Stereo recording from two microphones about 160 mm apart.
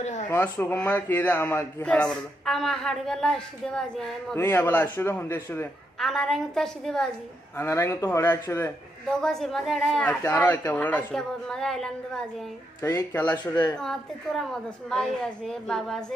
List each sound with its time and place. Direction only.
0.0 s a sound: 50° left (ahead or behind)
0.3 s speech: 15° left (ahead or behind)
5.9 s a woman's voice: centre (ahead or behind)
7.5 s speech: 15° left (ahead or behind)
13.4 s a woman's voice: 25° left (ahead or behind)
13.7 s a woman's voice: centre (ahead or behind)